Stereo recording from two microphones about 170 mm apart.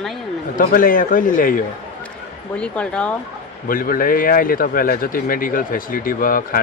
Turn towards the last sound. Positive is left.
turn(degrees=55)  # may be behind; listen again after turning